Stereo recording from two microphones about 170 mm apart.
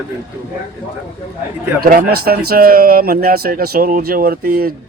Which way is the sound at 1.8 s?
60° right (ahead or behind).